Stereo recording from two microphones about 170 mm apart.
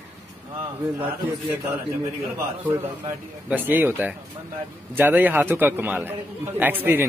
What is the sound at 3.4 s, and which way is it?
Speech, 10° right (ahead or behind).